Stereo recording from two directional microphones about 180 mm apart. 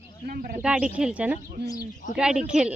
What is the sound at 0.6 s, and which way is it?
Speech, 5° right (ahead or behind).